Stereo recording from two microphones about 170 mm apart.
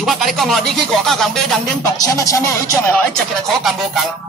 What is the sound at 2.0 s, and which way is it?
Speech, 20° left (ahead or behind).